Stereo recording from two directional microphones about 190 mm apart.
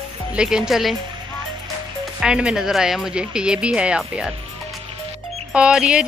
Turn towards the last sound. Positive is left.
turn(degrees=-5)  # may be behind; listen again after turning